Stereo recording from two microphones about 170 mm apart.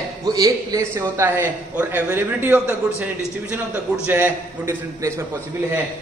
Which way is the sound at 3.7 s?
5° right (ahead or behind).